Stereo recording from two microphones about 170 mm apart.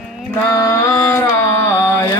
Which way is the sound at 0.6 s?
20° left (ahead or behind).